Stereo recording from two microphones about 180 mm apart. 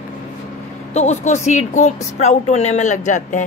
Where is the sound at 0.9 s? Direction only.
40° left (ahead or behind).